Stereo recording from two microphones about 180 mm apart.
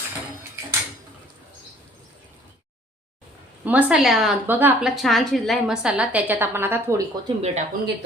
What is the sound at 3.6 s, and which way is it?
A woman's voice, 10° right (ahead or behind).